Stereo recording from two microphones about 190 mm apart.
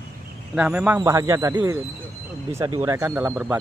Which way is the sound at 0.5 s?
5° right (ahead or behind).